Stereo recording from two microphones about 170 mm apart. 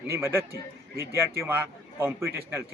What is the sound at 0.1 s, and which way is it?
A man's voice, 15° right (ahead or behind).